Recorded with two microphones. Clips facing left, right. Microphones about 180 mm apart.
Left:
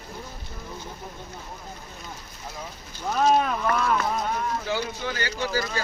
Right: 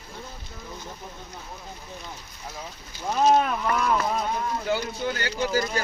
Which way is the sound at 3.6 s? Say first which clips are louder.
Even; 15° right (ahead or behind).